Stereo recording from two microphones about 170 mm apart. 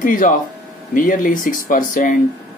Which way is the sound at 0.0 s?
50° left (ahead or behind).